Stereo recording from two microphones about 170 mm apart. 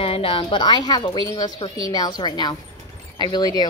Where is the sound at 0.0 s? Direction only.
35° left (ahead or behind).